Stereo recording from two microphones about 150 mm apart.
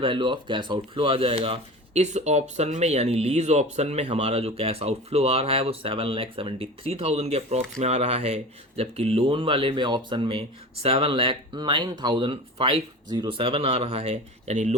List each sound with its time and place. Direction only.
0.0 s speech: 35° right (ahead or behind)